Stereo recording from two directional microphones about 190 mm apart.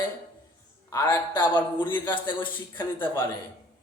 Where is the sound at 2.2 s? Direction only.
25° left (ahead or behind).